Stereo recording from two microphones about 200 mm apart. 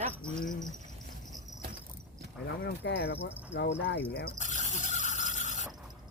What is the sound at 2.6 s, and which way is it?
Speech, 55° left (ahead or behind).